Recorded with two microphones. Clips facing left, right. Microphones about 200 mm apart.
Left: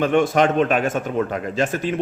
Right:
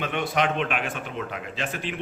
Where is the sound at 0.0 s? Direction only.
45° left (ahead or behind).